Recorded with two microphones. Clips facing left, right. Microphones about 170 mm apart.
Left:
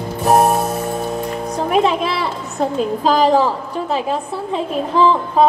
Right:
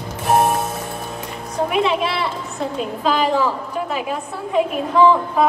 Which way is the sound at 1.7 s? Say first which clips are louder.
Left 4 dB; 40° left (ahead or behind).